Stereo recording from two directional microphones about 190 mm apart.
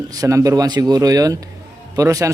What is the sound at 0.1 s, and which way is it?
A man's voice, 15° right (ahead or behind).